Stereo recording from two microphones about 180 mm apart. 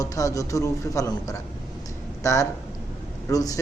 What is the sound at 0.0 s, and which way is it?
A man's voice, 20° left (ahead or behind).